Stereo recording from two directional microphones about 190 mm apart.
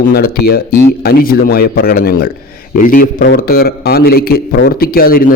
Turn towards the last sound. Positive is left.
turn(degrees=50)  # may be behind; listen again after turning